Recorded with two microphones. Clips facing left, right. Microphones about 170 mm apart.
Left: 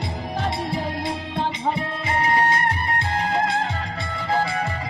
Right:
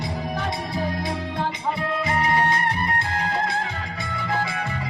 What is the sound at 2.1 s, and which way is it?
Music, 30° left (ahead or behind).